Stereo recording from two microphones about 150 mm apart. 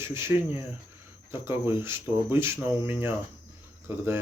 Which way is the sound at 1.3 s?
15° right (ahead or behind).